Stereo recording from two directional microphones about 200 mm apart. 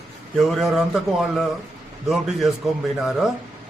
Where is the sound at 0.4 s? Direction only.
Centre (ahead or behind).